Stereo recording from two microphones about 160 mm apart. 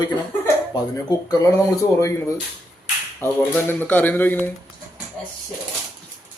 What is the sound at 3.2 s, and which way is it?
A man's voice, 15° left (ahead or behind).